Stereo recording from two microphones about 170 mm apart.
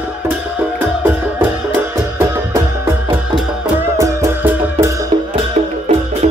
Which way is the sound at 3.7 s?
15° right (ahead or behind).